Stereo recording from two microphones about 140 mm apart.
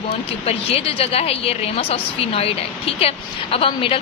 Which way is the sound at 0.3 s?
45° left (ahead or behind).